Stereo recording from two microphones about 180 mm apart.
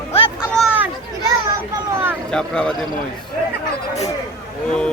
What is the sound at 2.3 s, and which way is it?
Speech, 5° left (ahead or behind).